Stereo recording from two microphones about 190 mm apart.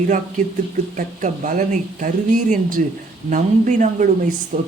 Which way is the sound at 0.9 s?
40° right (ahead or behind).